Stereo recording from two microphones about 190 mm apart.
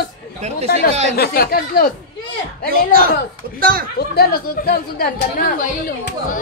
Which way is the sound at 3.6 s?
50° right (ahead or behind).